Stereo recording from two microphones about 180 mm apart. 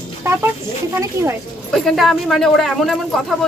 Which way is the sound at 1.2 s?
15° right (ahead or behind).